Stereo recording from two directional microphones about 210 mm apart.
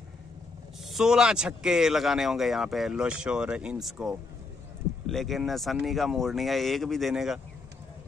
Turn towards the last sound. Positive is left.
turn(degrees=0)  # may be behind; listen again after turning